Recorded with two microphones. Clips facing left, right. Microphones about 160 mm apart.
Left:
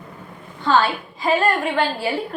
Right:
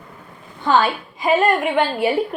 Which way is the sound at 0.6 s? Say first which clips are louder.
Right 1 dB; 20° right (ahead or behind).